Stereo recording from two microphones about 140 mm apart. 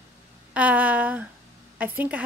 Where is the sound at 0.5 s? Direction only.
10° right (ahead or behind).